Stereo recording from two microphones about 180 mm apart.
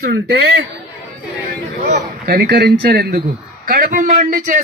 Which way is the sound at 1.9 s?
60° right (ahead or behind).